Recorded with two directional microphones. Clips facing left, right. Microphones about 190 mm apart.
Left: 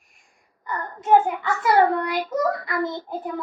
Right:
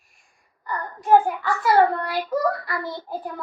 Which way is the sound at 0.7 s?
20° left (ahead or behind).